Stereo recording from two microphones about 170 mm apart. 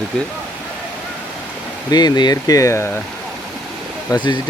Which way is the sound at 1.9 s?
25° left (ahead or behind).